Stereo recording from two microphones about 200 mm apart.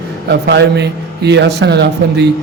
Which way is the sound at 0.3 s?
60° right (ahead or behind).